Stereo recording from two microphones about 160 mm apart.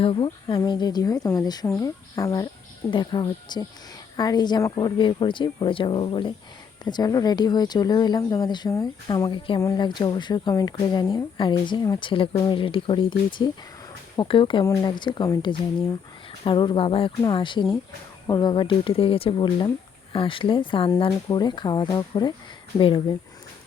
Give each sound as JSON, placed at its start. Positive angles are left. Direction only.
{"t": 0.0, "sound": "speech", "side_deg": 35}
{"t": 2.9, "sound": "speech", "side_deg": 30}